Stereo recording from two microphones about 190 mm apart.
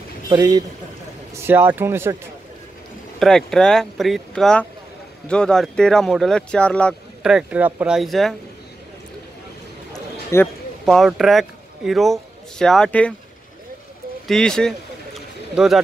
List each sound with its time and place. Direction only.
0.3 s speech: 15° right (ahead or behind)
3.2 s speech: centre (ahead or behind)
10.3 s a man's voice: 15° left (ahead or behind)
10.9 s speech: centre (ahead or behind)
14.2 s speech: 5° left (ahead or behind)